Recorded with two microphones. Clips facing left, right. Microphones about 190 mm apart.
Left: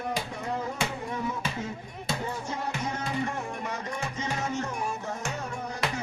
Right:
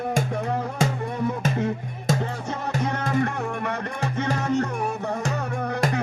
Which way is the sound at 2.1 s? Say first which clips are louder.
Right 9 dB; 45° right (ahead or behind).